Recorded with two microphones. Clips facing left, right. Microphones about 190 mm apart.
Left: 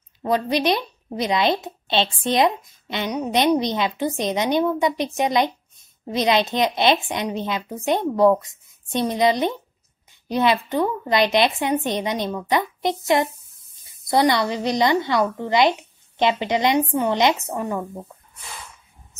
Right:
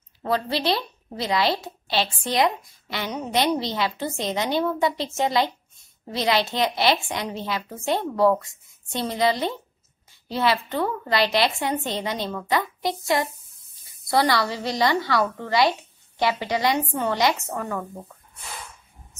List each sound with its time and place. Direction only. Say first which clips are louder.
0.2 s a woman's voice: left 4 dB; 15° left (ahead or behind)